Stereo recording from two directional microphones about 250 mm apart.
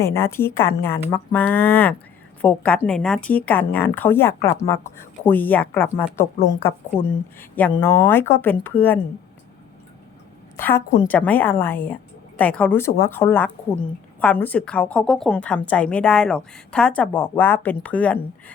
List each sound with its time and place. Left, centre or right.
0.0 s speech: centre
10.6 s a woman's voice: centre